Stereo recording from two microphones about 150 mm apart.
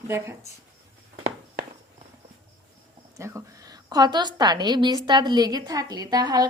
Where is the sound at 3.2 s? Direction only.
20° right (ahead or behind).